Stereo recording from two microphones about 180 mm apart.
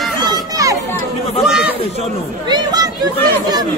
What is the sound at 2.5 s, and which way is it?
Speech, 20° right (ahead or behind).